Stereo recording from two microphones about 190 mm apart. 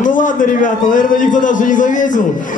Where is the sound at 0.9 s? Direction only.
45° left (ahead or behind).